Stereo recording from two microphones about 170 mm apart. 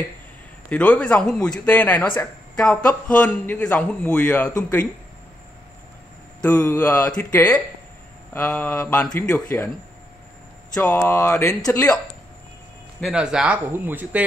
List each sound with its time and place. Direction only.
0.7 s speech: 5° left (ahead or behind)
6.6 s mantra: 20° left (ahead or behind)
7.1 s speech: 10° left (ahead or behind)
10.7 s speech: 10° left (ahead or behind)
13.0 s speech: 5° right (ahead or behind)